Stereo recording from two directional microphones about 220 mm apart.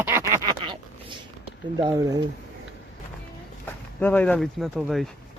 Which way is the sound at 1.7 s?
15° right (ahead or behind).